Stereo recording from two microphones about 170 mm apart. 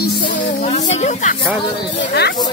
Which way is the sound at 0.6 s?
40° left (ahead or behind).